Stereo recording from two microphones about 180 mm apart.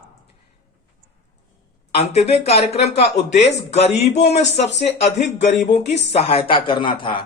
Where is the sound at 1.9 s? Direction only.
35° left (ahead or behind).